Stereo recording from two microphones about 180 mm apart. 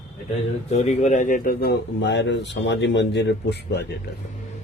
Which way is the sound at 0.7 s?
40° left (ahead or behind).